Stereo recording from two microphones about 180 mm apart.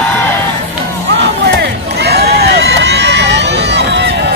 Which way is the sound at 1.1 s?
65° right (ahead or behind).